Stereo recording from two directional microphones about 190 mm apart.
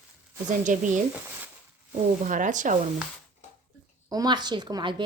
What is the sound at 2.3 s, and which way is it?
Speech, 40° right (ahead or behind).